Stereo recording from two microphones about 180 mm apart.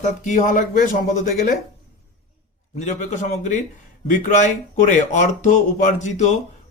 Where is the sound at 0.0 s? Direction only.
45° left (ahead or behind).